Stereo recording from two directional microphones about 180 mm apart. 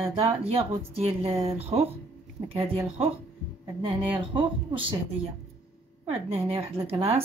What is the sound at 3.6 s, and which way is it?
A woman's voice, 20° right (ahead or behind).